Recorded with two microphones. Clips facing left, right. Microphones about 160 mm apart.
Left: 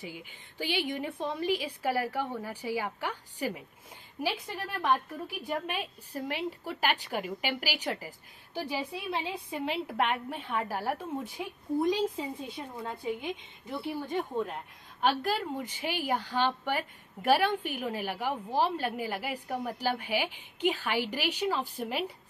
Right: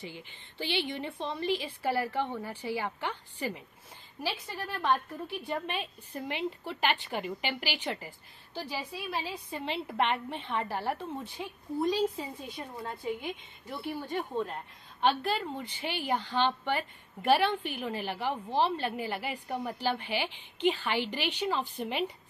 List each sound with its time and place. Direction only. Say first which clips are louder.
0.0 s a woman's voice: left 1 dB; 10° left (ahead or behind)
11.3 s a woman's voice: left 4 dB; 20° left (ahead or behind)
12.6 s a woman's voice: left 1 dB; 5° left (ahead or behind)